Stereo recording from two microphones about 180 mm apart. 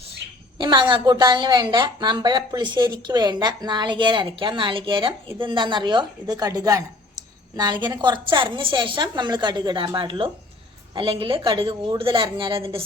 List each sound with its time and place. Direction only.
0.6 s a woman's voice: 25° right (ahead or behind)